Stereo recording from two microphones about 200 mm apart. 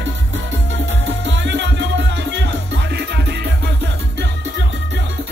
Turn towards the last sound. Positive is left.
turn(degrees=-55)  # may be behind; listen again after turning